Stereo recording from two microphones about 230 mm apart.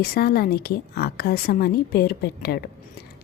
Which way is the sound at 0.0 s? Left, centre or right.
Left.